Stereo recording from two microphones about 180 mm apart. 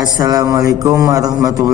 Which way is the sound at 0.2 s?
20° right (ahead or behind).